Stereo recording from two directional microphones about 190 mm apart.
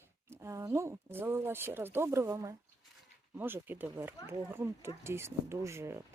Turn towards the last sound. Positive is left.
turn(degrees=-15)  # may be behind; listen again after turning